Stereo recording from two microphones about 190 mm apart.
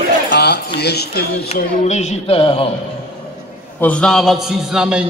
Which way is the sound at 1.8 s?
35° left (ahead or behind).